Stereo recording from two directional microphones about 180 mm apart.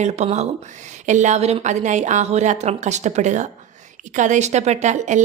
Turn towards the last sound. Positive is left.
turn(degrees=-40)  # may be behind; listen again after turning